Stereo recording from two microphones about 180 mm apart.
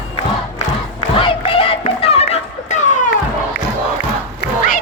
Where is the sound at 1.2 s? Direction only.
30° left (ahead or behind).